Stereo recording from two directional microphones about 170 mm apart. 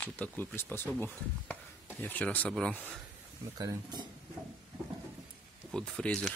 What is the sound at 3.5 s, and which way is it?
Speech, 20° right (ahead or behind).